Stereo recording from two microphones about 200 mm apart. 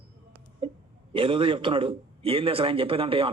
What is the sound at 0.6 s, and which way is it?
Hiccup, 25° right (ahead or behind).